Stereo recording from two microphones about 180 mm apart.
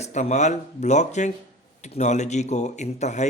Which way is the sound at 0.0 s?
40° left (ahead or behind).